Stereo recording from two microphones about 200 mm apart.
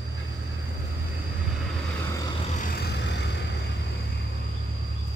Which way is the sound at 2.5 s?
45° left (ahead or behind).